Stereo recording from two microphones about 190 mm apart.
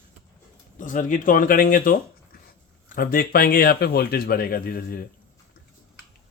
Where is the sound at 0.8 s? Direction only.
45° left (ahead or behind).